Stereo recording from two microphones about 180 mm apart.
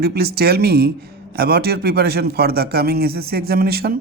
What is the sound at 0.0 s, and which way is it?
A man's voice, 60° right (ahead or behind).